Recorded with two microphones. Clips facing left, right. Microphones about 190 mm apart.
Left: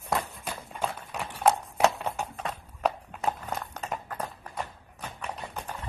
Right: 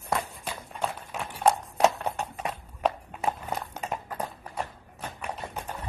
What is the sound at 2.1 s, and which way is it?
Clip-clop, 5° right (ahead or behind).